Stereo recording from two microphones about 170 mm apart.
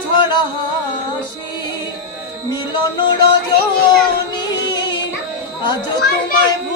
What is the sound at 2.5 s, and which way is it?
Music, 25° left (ahead or behind).